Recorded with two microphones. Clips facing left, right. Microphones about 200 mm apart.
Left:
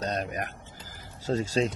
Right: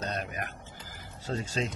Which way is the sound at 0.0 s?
40° left (ahead or behind).